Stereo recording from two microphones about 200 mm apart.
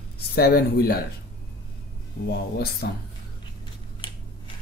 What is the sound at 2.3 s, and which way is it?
Speech, 50° left (ahead or behind).